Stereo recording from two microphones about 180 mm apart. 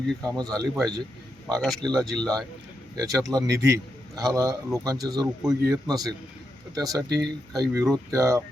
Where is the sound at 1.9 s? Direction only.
5° left (ahead or behind).